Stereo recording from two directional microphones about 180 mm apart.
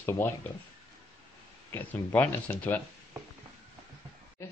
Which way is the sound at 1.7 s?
10° left (ahead or behind).